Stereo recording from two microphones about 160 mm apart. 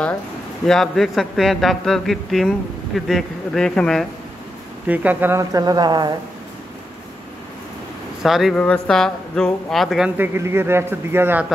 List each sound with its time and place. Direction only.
0.7 s speech: centre (ahead or behind)
4.8 s speech: 10° right (ahead or behind); by 6.1 s 25° right (ahead or behind)
8.2 s speech: centre (ahead or behind)